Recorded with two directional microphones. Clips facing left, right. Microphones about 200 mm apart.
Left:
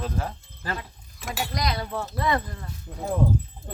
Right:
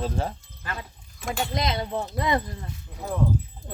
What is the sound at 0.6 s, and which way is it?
Speech, 35° left (ahead or behind).